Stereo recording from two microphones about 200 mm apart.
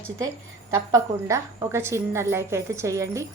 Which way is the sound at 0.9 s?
15° right (ahead or behind).